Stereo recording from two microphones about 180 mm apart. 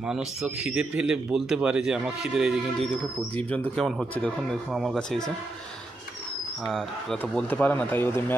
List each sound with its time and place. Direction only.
0.0 s a man's voice: centre (ahead or behind)
6.6 s speech: centre (ahead or behind)